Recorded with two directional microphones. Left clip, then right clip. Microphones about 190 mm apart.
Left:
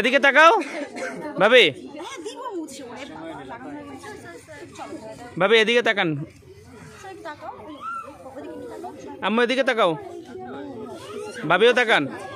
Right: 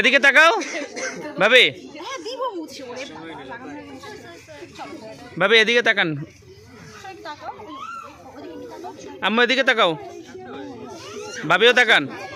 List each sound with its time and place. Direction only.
0.0 s speech: 10° left (ahead or behind)
0.7 s speech: 40° left (ahead or behind)
1.4 s a sound: 10° left (ahead or behind)
5.4 s speech: 10° left (ahead or behind)
9.2 s a man's voice: 5° left (ahead or behind)
11.4 s a man's voice: 5° left (ahead or behind)